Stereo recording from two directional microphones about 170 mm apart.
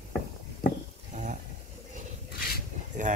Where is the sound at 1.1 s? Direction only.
45° right (ahead or behind).